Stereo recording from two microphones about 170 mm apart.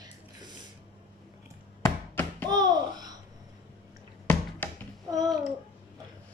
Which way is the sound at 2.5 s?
25° right (ahead or behind).